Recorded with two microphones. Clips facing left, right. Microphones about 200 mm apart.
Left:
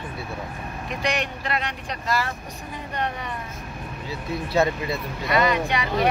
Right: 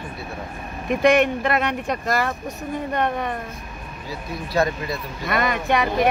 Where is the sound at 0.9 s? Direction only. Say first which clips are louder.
Right 11 dB; 50° right (ahead or behind).